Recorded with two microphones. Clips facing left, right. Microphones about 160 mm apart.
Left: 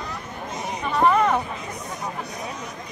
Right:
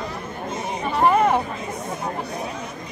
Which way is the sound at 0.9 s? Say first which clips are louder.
Right 1 dB; 30° right (ahead or behind).